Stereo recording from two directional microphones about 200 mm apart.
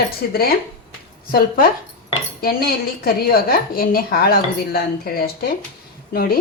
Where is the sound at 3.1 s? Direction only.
50° left (ahead or behind).